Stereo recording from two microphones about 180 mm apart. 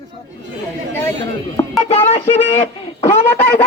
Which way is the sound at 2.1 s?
35° left (ahead or behind).